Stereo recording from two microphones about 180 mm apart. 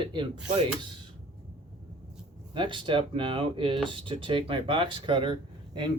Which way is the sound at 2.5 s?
25° right (ahead or behind).